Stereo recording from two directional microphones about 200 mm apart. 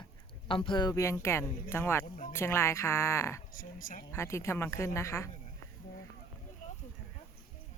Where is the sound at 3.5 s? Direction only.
45° left (ahead or behind).